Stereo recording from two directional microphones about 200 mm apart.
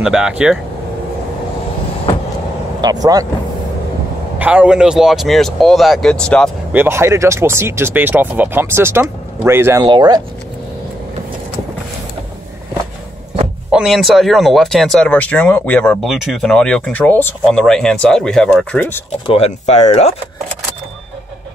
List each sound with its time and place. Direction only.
0.0 s speech: 5° right (ahead or behind)
2.8 s speech: 20° right (ahead or behind)
4.4 s speech: 5° right (ahead or behind)
6.7 s speech: 10° right (ahead or behind)
13.7 s speech: 5° right (ahead or behind)
19.2 s speech: 30° left (ahead or behind)